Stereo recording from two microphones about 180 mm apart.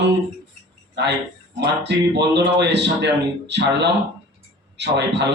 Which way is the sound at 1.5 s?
70° right (ahead or behind).